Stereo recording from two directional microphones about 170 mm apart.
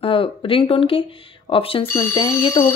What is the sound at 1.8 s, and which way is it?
Speech, 15° left (ahead or behind).